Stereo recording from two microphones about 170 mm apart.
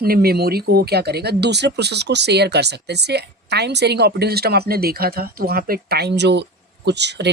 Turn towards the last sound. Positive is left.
turn(degrees=-90)